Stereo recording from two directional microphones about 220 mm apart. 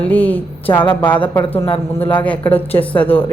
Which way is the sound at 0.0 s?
5° left (ahead or behind).